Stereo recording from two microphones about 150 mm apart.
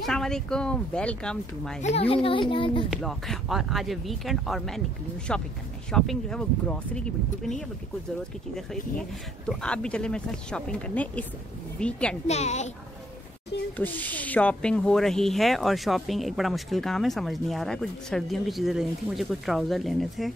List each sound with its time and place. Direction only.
0.0 s speech: 5° left (ahead or behind)
1.8 s a child's voice: 45° left (ahead or behind)
2.9 s speech: centre (ahead or behind)
9.5 s speech: 5° left (ahead or behind)
12.3 s a woman's voice: 50° left (ahead or behind)
13.7 s speech: 10° left (ahead or behind)